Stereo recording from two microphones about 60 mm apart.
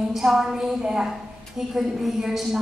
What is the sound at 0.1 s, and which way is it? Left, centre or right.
A woman's voice, centre.